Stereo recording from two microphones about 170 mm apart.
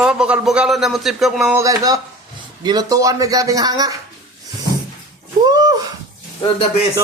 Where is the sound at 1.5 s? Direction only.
20° right (ahead or behind).